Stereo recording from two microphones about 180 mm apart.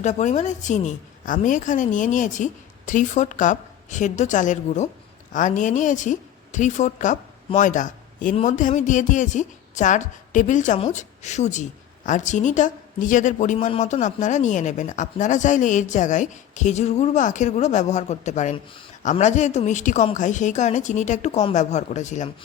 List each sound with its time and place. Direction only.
0.0 s a woman's voice: 40° left (ahead or behind)